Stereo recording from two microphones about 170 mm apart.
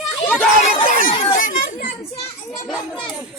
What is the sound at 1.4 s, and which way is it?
Speech, 50° left (ahead or behind).